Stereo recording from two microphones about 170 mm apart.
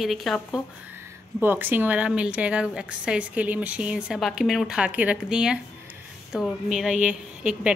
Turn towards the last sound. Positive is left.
turn(degrees=-5)  # may be behind; listen again after turning